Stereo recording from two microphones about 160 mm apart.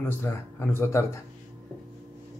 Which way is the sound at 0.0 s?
15° left (ahead or behind).